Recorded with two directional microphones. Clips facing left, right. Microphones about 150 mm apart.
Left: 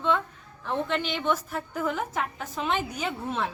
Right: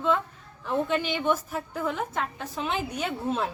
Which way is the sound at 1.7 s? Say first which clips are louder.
Left 1 dB; centre (ahead or behind).